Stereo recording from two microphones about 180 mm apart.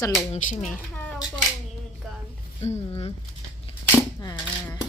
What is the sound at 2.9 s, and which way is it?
Speech, 35° left (ahead or behind).